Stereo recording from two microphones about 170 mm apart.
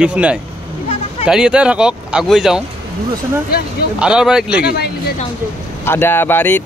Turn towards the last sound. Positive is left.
turn(degrees=10)  # may be behind; listen again after turning